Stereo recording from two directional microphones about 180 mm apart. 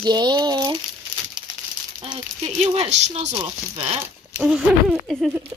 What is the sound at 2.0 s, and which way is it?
Speech, 30° right (ahead or behind).